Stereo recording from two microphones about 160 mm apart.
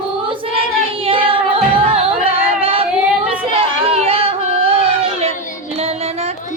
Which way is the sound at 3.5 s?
40° right (ahead or behind).